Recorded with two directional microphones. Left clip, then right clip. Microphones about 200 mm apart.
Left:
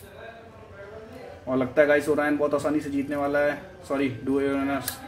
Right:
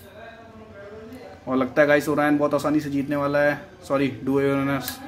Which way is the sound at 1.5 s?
25° right (ahead or behind).